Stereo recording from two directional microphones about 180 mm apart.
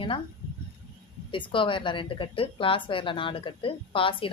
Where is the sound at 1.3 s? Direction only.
30° left (ahead or behind).